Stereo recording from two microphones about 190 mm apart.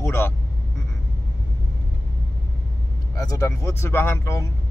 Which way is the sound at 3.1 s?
20° left (ahead or behind).